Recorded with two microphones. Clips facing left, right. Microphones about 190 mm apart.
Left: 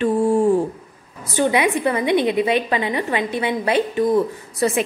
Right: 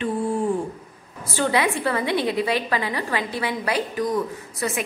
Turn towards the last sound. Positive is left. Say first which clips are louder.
# left 7 dB
turn(degrees=30)  # may be behind; listen again after turning